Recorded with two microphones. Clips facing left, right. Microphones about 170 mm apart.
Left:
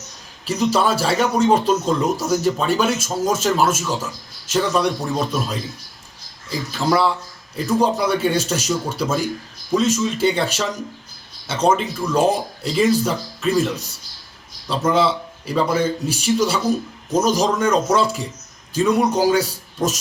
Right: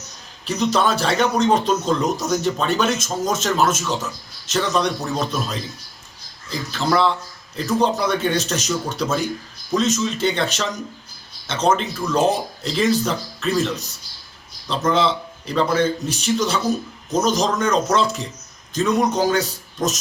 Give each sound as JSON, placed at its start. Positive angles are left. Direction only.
{"t": 0.4, "sound": "speech", "side_deg": 5}